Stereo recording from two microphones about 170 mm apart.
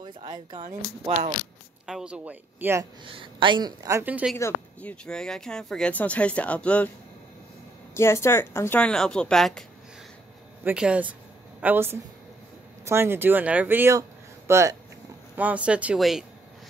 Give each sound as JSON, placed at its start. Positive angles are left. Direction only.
{"t": 0.0, "sound": "a woman's voice", "side_deg": -25}
{"t": 1.9, "sound": "speech", "side_deg": -5}
{"t": 3.1, "sound": "a woman's voice", "side_deg": -30}
{"t": 4.0, "sound": "speech", "side_deg": -10}
{"t": 4.4, "sound": "speech", "side_deg": 10}
{"t": 7.9, "sound": "speech", "side_deg": 15}
{"t": 10.6, "sound": "speech", "side_deg": -10}